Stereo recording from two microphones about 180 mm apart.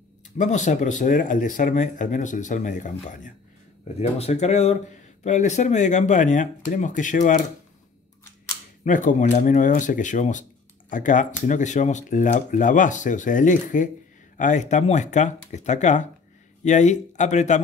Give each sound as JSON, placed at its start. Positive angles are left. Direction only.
{"t": 0.4, "sound": "speech", "side_deg": 40}
{"t": 8.8, "sound": "speech", "side_deg": 45}